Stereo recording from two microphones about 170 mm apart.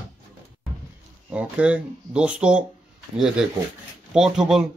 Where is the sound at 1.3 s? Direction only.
10° right (ahead or behind).